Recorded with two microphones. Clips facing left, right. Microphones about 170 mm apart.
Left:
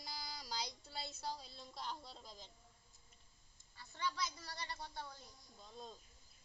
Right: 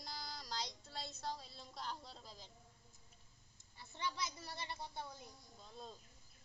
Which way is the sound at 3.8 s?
20° right (ahead or behind).